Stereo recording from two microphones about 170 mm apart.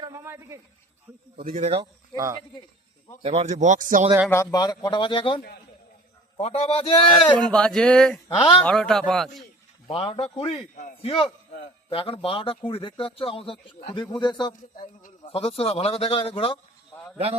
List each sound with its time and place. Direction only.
0.0 s a sound: 20° right (ahead or behind)
1.5 s speech: 45° right (ahead or behind)
1.8 s speech: 20° right (ahead or behind)
3.2 s speech: 40° right (ahead or behind)
4.3 s speech: 20° left (ahead or behind)
6.4 s speech: 35° left (ahead or behind)
7.2 s speech: 5° left (ahead or behind)
8.4 s speech: 30° left (ahead or behind)
8.6 s speech: 5° left (ahead or behind)
9.8 s speech: 35° left (ahead or behind)
16.9 s sheep: 10° left (ahead or behind)